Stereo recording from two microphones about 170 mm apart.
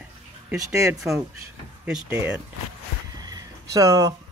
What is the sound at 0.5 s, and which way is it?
Speech, 20° right (ahead or behind).